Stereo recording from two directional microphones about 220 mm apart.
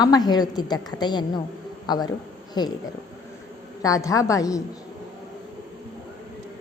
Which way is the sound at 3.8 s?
15° left (ahead or behind).